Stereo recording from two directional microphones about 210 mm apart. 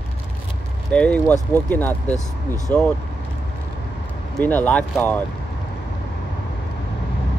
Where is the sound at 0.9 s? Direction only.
5° left (ahead or behind).